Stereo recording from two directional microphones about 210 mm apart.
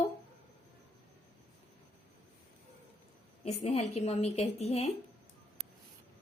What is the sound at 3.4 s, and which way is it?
A woman's voice, 30° left (ahead or behind).